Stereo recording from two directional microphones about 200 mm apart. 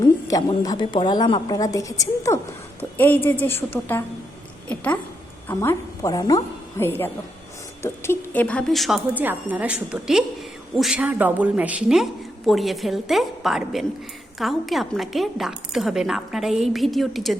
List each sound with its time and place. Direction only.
0.3 s a woman's voice: 20° left (ahead or behind)
4.7 s a sound: 10° left (ahead or behind)
5.5 s a woman's voice: 15° left (ahead or behind)